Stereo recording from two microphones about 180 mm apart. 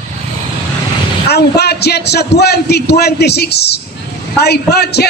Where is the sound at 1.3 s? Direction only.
65° left (ahead or behind).